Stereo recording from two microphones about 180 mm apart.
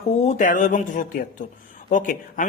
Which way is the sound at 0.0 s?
40° left (ahead or behind).